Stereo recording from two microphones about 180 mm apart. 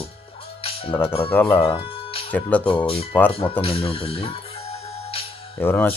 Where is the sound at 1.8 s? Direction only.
30° left (ahead or behind).